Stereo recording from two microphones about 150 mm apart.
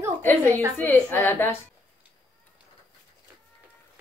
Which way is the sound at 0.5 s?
20° right (ahead or behind).